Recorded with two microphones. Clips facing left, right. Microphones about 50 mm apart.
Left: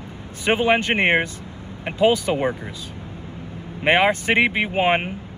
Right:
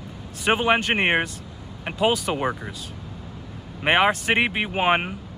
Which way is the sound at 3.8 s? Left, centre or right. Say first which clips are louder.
Left 2 dB; right.